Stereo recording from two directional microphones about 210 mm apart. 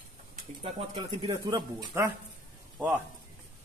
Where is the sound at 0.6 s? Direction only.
25° right (ahead or behind).